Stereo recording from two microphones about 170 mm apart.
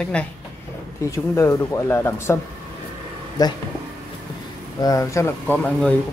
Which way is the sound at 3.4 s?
20° left (ahead or behind).